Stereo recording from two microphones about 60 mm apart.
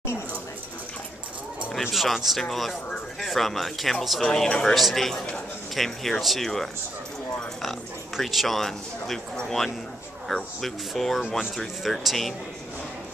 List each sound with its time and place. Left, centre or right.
1.7 s speech: centre
8.2 s speech: centre